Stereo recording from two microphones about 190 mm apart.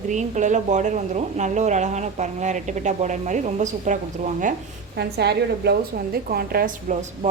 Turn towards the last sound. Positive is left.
turn(degrees=-45)  # may be behind; listen again after turning